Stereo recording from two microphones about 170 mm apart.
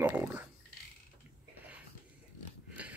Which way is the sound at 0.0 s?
10° right (ahead or behind).